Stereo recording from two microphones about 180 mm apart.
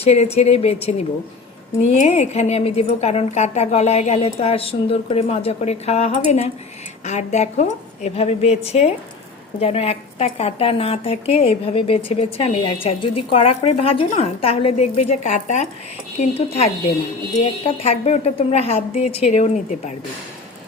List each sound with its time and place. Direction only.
0.0 s a woman's voice: 35° left (ahead or behind)
17.7 s a woman's voice: 35° left (ahead or behind)